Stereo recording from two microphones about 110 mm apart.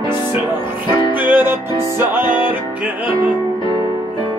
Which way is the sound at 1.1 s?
15° right (ahead or behind).